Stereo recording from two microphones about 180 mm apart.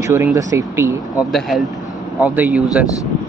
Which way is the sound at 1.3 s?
Centre (ahead or behind).